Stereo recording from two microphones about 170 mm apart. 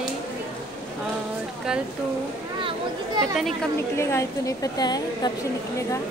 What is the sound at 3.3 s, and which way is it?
Speech, centre (ahead or behind).